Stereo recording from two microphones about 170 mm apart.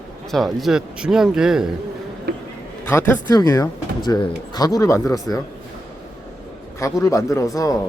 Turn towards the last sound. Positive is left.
turn(degrees=20)  # may be behind; listen again after turning